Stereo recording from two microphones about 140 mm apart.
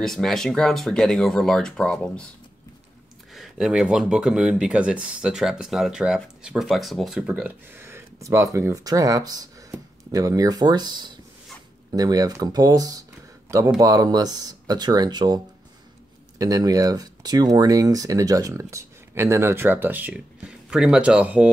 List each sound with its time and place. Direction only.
0.0 s speech: 5° left (ahead or behind)
3.3 s speech: 5° right (ahead or behind)